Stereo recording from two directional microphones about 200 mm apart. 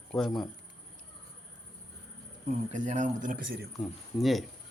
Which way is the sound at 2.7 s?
35° right (ahead or behind).